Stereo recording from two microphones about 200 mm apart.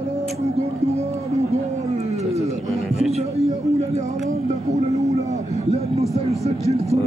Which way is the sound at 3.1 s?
30° right (ahead or behind).